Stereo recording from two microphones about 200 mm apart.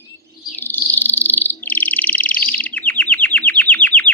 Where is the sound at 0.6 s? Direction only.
10° left (ahead or behind).